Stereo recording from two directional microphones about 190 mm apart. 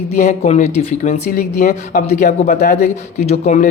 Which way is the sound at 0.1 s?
40° left (ahead or behind).